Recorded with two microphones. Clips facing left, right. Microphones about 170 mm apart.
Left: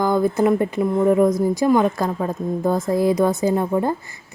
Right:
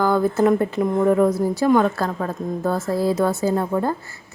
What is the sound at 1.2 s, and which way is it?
Speech, 10° right (ahead or behind).